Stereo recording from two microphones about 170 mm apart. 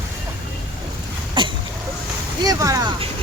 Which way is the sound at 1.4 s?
30° right (ahead or behind).